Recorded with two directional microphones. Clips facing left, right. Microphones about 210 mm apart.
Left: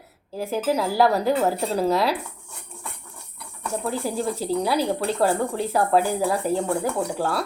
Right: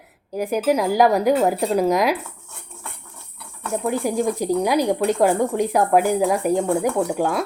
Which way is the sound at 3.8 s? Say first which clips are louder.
Right 5 dB; 15° right (ahead or behind).